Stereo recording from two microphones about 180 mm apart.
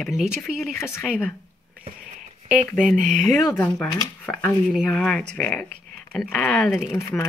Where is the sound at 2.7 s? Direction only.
Centre (ahead or behind).